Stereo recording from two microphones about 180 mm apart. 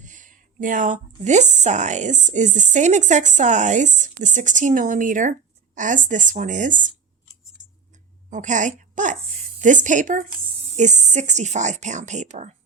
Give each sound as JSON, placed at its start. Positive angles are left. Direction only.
{"t": 0.0, "sound": "speech", "side_deg": -45}
{"t": 8.3, "sound": "a woman's voice", "side_deg": -45}